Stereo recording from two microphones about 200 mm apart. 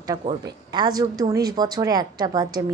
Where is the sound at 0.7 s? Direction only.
20° right (ahead or behind).